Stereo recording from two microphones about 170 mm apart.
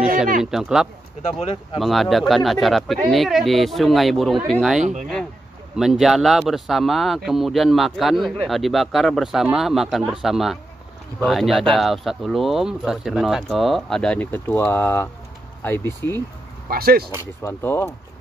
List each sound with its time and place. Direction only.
0.4 s speech: 5° right (ahead or behind)
1.4 s speech: 35° left (ahead or behind)
1.8 s speech: centre (ahead or behind)
16.6 s speech: 65° right (ahead or behind)
17.4 s speech: 15° left (ahead or behind)